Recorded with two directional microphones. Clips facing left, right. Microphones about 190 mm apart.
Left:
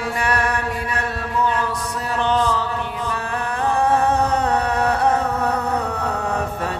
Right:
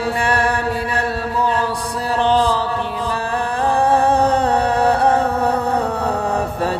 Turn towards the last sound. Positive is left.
turn(degrees=-35)  # may be behind; listen again after turning